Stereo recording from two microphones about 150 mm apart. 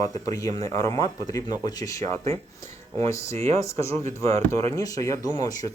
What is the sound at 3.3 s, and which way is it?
Speech, 45° right (ahead or behind).